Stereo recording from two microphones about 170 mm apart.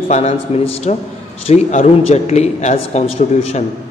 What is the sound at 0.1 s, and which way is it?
A woman's voice, 40° left (ahead or behind).